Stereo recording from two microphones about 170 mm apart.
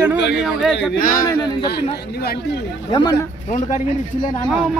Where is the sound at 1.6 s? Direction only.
65° left (ahead or behind).